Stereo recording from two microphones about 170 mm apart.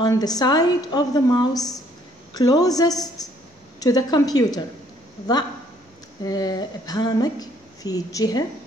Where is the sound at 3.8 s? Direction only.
20° left (ahead or behind).